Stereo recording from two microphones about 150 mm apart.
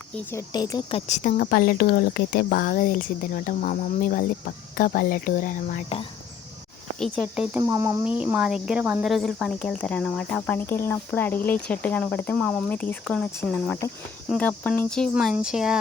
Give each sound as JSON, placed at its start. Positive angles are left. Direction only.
{"t": 0.3, "sound": "speech", "side_deg": 20}
{"t": 0.9, "sound": "speech", "side_deg": 50}
{"t": 7.0, "sound": "speech", "side_deg": 0}
{"t": 7.6, "sound": "speech", "side_deg": -20}
{"t": 8.0, "sound": "speech", "side_deg": -10}
{"t": 9.0, "sound": "cricket", "side_deg": 0}
{"t": 14.3, "sound": "speech", "side_deg": 10}